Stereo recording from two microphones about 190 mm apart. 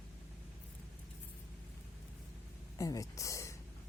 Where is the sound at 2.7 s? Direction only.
15° left (ahead or behind).